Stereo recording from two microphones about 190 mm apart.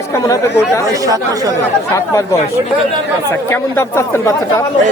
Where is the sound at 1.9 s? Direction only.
15° left (ahead or behind).